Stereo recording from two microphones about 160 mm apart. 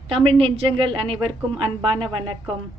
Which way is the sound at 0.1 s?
35° right (ahead or behind).